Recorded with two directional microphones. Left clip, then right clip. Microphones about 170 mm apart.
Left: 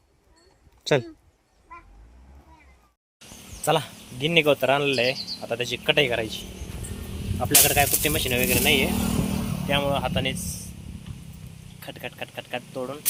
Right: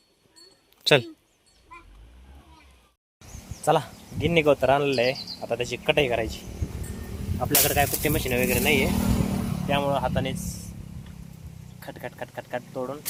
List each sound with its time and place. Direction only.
0.9 s speech: 5° left (ahead or behind)
3.7 s speech: 5° left (ahead or behind)
8.9 s vehicle: 35° left (ahead or behind)
9.6 s speech: 5° left (ahead or behind)
11.8 s speech: 10° left (ahead or behind)